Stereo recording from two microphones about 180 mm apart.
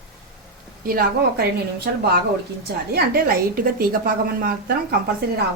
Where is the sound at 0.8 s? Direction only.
55° right (ahead or behind).